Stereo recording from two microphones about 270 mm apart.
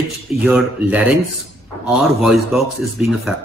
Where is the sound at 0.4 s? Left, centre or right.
Centre.